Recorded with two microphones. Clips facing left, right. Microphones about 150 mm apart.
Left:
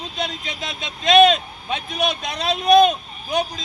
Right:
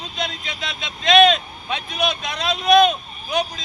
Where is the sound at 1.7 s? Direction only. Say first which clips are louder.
Even; 45° left (ahead or behind).